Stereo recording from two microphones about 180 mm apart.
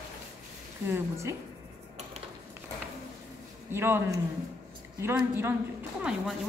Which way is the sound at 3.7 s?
15° right (ahead or behind).